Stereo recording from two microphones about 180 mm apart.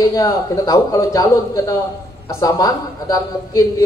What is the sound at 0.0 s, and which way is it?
A man's voice, 20° left (ahead or behind).